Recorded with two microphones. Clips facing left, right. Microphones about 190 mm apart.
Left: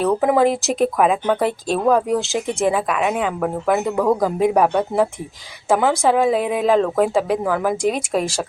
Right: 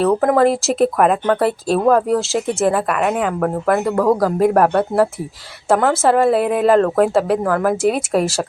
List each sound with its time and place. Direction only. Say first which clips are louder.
0.0 s speech: right 2 dB; 5° left (ahead or behind)